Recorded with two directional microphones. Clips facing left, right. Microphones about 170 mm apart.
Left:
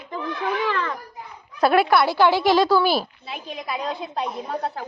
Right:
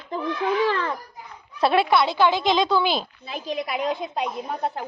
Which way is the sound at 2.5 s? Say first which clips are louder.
Left 3 dB; 20° right (ahead or behind).